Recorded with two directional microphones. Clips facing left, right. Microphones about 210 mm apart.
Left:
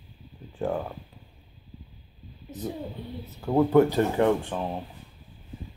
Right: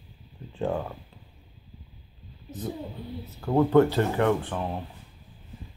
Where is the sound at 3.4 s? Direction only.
10° left (ahead or behind).